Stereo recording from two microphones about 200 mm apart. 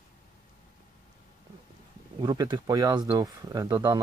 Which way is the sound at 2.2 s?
20° right (ahead or behind).